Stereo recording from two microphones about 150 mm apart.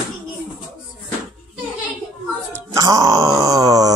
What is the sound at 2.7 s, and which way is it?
Groan, 20° right (ahead or behind).